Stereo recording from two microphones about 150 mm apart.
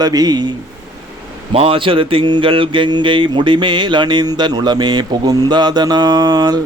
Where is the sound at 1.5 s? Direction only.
35° right (ahead or behind).